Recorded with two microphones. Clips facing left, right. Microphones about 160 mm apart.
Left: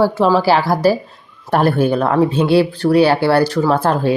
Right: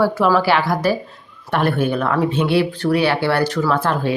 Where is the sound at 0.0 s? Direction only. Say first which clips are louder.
Left 2 dB; 25° left (ahead or behind).